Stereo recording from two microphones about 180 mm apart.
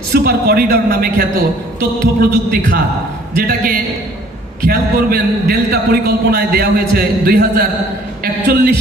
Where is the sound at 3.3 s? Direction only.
55° right (ahead or behind).